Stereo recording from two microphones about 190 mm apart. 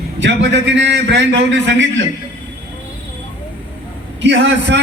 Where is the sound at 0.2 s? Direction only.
70° right (ahead or behind).